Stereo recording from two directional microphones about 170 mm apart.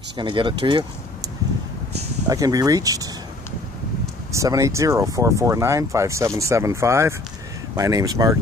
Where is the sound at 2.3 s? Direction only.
20° right (ahead or behind).